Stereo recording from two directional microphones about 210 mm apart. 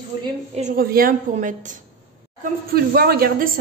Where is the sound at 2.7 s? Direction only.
45° right (ahead or behind).